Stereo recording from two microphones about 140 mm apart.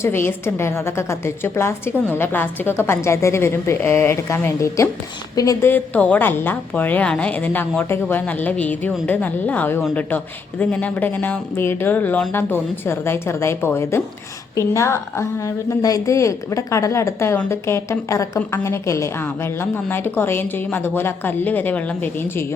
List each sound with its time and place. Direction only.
0.0 s a woman's voice: 15° left (ahead or behind)
5.7 s a woman's voice: 10° left (ahead or behind)